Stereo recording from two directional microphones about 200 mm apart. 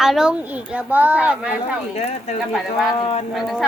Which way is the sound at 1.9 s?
35° left (ahead or behind).